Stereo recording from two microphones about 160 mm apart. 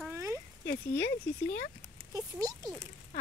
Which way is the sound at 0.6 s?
90° left.